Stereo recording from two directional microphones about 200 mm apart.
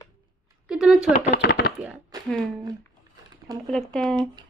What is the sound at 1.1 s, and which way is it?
Speech, 50° left (ahead or behind).